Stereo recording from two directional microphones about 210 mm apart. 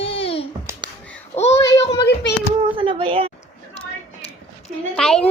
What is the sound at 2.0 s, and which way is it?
Speech, 55° left (ahead or behind).